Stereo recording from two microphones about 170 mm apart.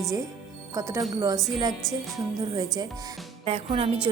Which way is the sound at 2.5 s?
20° right (ahead or behind).